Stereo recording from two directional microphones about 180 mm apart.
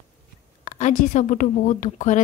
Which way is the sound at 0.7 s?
40° left (ahead or behind).